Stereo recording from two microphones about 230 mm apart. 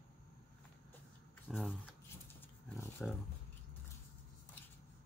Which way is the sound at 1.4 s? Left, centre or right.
Centre.